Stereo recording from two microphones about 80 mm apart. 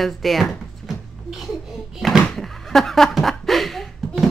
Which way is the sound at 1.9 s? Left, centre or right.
Centre.